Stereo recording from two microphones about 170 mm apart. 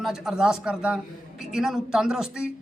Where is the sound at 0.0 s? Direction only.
Centre (ahead or behind).